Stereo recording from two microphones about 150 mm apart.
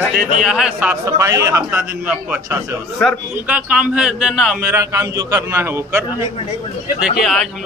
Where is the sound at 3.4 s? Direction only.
10° right (ahead or behind).